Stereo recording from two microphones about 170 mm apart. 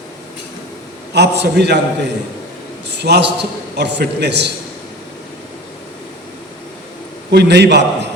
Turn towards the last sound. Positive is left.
turn(degrees=-90)